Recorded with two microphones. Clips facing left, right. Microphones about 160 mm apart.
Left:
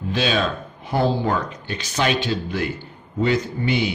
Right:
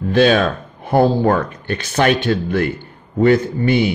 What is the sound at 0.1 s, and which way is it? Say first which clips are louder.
A man's voice: right 8 dB; 55° right (ahead or behind).